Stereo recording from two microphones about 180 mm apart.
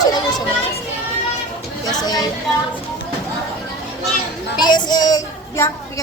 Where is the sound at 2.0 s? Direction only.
20° left (ahead or behind).